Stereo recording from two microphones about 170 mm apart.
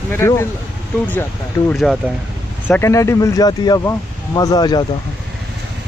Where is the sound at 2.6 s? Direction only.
15° left (ahead or behind).